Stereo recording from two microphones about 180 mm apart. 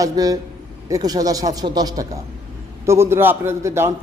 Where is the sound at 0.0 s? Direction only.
20° right (ahead or behind).